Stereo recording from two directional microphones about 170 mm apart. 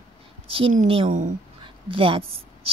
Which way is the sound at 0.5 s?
35° right (ahead or behind).